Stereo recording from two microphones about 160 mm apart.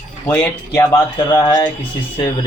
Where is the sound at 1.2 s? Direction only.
25° left (ahead or behind).